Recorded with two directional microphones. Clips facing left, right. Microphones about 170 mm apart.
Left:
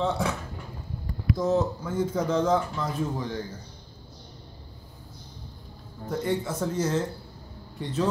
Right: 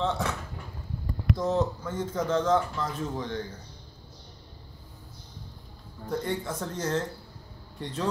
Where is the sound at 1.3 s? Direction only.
5° left (ahead or behind).